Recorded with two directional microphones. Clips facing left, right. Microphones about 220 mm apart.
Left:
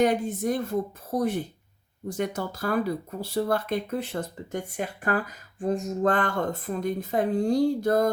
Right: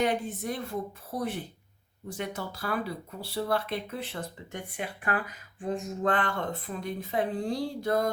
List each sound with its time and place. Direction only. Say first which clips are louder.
0.0 s speech: left 5 dB; 45° left (ahead or behind)